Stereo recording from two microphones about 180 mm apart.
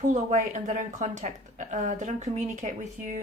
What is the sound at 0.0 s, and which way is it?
A woman's voice, 40° right (ahead or behind).